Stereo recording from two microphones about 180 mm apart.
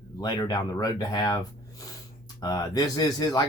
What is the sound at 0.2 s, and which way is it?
Speech, 20° left (ahead or behind).